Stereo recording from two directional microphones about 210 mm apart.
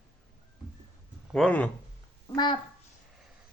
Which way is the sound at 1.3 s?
5° left (ahead or behind).